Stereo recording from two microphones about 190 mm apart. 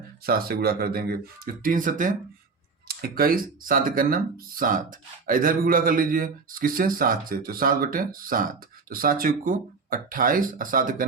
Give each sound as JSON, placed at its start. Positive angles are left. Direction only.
{"t": 0.3, "sound": "speech", "side_deg": -50}